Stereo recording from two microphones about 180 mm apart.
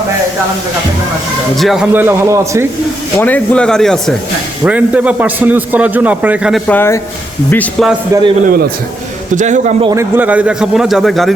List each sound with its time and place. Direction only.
1.5 s a man's voice: centre (ahead or behind); by 2.6 s 15° right (ahead or behind)
3.2 s a man's voice: 10° left (ahead or behind); by 6.6 s 5° right (ahead or behind)
6.7 s a man's voice: 10° left (ahead or behind)
8.1 s a man's voice: 15° right (ahead or behind)
9.3 s speech: 45° right (ahead or behind)
9.9 s speech: 10° right (ahead or behind)